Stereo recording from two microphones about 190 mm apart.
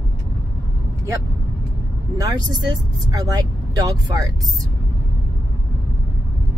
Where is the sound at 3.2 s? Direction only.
20° right (ahead or behind).